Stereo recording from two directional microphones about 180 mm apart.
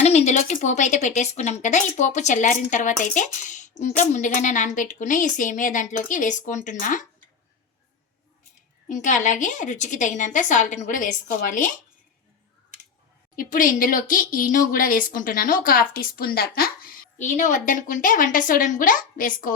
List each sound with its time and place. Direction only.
0.0 s speech: 40° left (ahead or behind)
8.9 s speech: 45° left (ahead or behind)
13.3 s speech: 50° left (ahead or behind)